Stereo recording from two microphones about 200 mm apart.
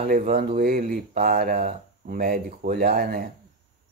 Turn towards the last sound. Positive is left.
turn(degrees=-50)  # may be behind; listen again after turning